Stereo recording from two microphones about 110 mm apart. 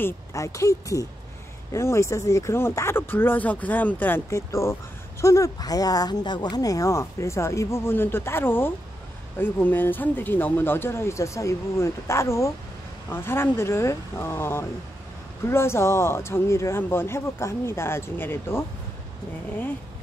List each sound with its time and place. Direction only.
0.0 s speech: 30° left (ahead or behind)